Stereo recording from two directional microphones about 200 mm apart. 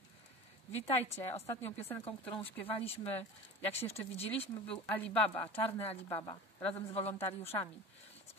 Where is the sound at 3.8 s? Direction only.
30° left (ahead or behind).